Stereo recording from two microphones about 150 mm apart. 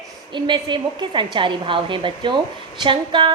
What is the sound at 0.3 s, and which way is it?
A woman's voice, 30° right (ahead or behind).